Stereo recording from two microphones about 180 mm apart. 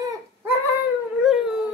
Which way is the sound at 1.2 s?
Centre (ahead or behind).